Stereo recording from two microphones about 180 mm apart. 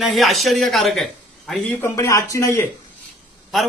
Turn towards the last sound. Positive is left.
turn(degrees=0)  # may be behind; listen again after turning